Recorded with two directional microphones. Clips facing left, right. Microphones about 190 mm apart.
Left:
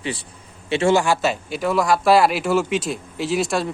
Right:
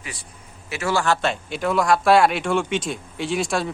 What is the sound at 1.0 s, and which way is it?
A man's voice, 5° left (ahead or behind).